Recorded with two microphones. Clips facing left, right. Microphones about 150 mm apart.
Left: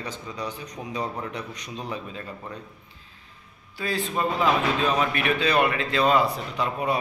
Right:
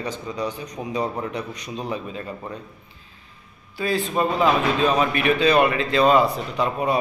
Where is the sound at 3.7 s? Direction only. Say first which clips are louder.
Right 5 dB; 15° right (ahead or behind).